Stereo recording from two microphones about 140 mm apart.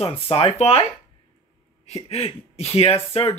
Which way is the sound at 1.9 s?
50° left (ahead or behind).